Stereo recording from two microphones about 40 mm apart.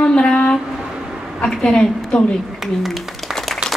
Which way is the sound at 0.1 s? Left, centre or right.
Left.